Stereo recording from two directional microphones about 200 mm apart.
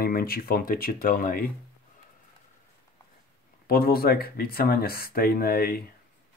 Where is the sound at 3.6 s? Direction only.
50° left (ahead or behind).